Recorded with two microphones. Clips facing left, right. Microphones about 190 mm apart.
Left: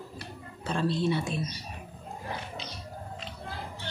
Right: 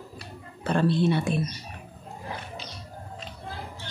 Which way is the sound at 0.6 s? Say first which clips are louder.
Right 5 dB; 60° right (ahead or behind).